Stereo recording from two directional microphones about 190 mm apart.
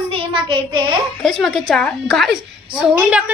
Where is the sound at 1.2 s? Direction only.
Centre (ahead or behind).